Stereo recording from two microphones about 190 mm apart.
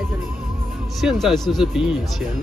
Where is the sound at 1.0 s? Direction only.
Centre (ahead or behind).